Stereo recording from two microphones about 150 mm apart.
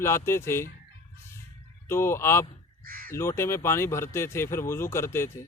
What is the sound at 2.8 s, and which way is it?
Crow, 70° right (ahead or behind).